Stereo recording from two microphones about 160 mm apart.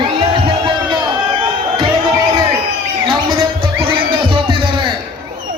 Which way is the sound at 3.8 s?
35° right (ahead or behind).